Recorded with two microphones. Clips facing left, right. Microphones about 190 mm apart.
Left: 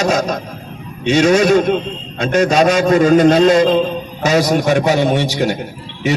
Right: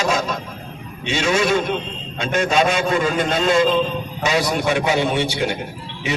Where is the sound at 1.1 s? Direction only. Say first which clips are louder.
Left 8 dB; 40° left (ahead or behind).